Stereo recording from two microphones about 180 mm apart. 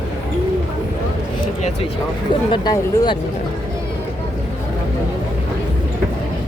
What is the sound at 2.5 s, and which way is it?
Speech, 20° left (ahead or behind).